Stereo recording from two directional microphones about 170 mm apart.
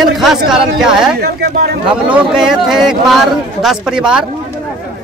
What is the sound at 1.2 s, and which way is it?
Speech, 70° right (ahead or behind).